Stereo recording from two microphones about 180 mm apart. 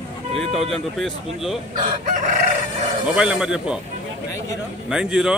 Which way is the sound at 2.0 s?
45° right (ahead or behind).